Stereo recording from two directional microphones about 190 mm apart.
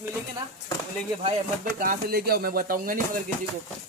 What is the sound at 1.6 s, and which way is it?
Speech, 45° right (ahead or behind).